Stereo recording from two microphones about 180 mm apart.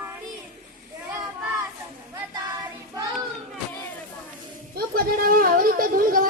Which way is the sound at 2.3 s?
20° right (ahead or behind).